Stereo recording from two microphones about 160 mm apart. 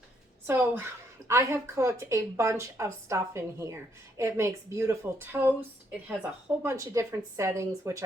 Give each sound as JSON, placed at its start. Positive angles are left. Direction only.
{"t": 0.4, "sound": "speech", "side_deg": -15}
{"t": 6.6, "sound": "speech", "side_deg": -15}